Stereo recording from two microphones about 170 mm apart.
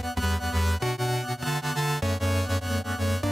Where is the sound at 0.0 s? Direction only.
Centre (ahead or behind).